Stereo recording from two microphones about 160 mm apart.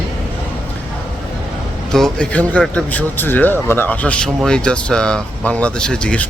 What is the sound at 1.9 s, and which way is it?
Speech, 5° left (ahead or behind).